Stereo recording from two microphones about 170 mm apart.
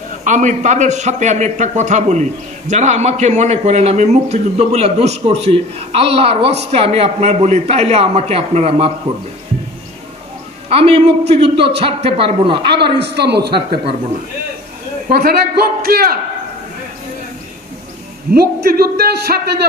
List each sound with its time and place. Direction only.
0.2 s a man's voice: 45° right (ahead or behind)
10.7 s a man's voice: 35° right (ahead or behind)
12.7 s a man's voice: 75° right (ahead or behind)
15.0 s a man's voice: 60° right (ahead or behind)
18.3 s a man's voice: 65° right (ahead or behind)